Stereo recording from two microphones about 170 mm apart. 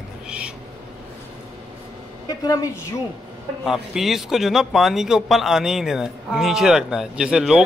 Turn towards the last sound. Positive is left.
turn(degrees=-5)  # may be behind; listen again after turning